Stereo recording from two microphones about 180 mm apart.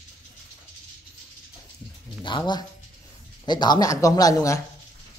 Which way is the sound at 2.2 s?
25° left (ahead or behind).